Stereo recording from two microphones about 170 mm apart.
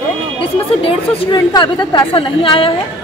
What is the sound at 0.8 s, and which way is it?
A woman's voice, 25° left (ahead or behind).